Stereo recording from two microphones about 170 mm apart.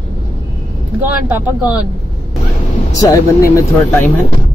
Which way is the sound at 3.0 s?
20° left (ahead or behind).